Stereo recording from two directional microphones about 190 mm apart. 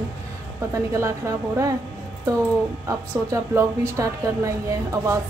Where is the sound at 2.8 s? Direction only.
15° right (ahead or behind).